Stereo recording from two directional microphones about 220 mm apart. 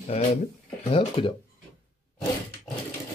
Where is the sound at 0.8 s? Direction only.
30° left (ahead or behind).